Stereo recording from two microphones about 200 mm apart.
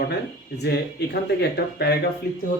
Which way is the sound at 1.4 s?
55° left (ahead or behind).